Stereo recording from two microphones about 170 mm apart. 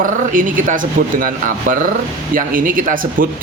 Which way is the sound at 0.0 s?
50° right (ahead or behind).